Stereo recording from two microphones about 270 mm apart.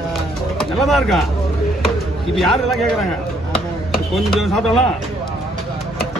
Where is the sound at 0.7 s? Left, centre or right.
Centre.